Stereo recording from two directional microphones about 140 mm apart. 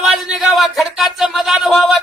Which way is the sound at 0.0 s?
Centre (ahead or behind).